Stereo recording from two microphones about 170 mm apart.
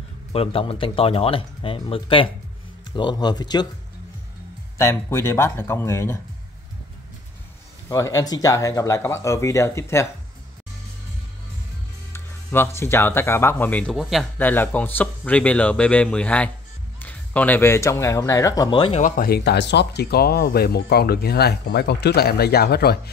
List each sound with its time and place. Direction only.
0.3 s speech: 35° left (ahead or behind)
4.7 s speech: 15° left (ahead or behind)
7.9 s speech: 20° left (ahead or behind)
12.1 s speech: 15° left (ahead or behind)
18.9 s speech: 55° left (ahead or behind); by 23.1 s 70° left (ahead or behind)